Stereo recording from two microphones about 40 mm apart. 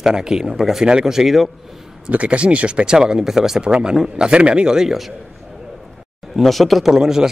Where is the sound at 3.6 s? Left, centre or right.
Right.